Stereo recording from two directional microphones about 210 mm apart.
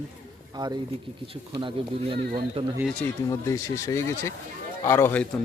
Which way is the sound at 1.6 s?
25° right (ahead or behind).